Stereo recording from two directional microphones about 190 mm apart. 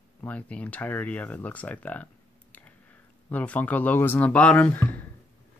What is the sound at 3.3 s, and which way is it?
Speech, 5° left (ahead or behind).